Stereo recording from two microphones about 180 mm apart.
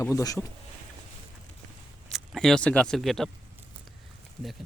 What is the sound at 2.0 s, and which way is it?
Speech, centre (ahead or behind).